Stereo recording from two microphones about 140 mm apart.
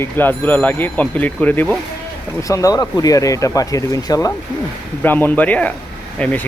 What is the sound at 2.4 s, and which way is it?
Speech, 25° left (ahead or behind).